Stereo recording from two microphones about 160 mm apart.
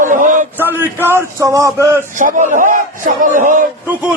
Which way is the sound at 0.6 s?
15° right (ahead or behind).